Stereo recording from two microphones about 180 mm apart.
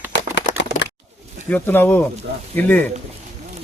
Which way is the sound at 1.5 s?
10° left (ahead or behind).